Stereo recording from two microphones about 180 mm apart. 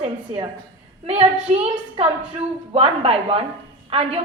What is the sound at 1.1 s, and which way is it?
A woman's voice, 35° right (ahead or behind).